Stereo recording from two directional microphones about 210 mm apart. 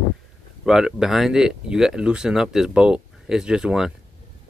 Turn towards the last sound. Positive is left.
turn(degrees=-5)  # may be behind; listen again after turning